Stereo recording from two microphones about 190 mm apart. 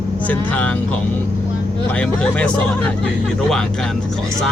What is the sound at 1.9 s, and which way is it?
Speech, 5° left (ahead or behind).